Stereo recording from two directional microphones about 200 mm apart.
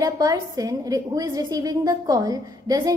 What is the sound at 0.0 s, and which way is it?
A woman's voice, 15° right (ahead or behind).